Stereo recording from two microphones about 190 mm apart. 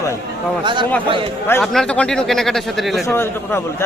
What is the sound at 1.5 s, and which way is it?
Speech, 5° left (ahead or behind).